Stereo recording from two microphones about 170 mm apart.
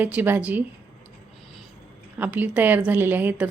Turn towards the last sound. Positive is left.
turn(degrees=-10)  # may be behind; listen again after turning